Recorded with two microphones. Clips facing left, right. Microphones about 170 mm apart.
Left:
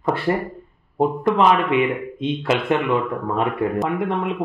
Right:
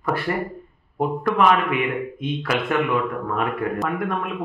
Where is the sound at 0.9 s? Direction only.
25° left (ahead or behind).